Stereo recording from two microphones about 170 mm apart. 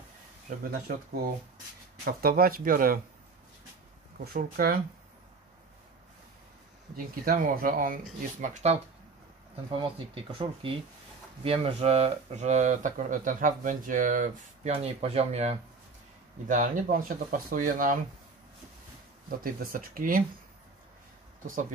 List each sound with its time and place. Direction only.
0.5 s speech: 55° right (ahead or behind)
2.0 s speech: 65° right (ahead or behind)
4.2 s speech: 60° right (ahead or behind)
7.2 s speech: 55° right (ahead or behind)
8.6 s speech: 40° right (ahead or behind)
14.7 s speech: 35° right (ahead or behind)
16.4 s speech: 50° right (ahead or behind)
19.2 s speech: 60° right (ahead or behind)
21.5 s speech: 50° right (ahead or behind)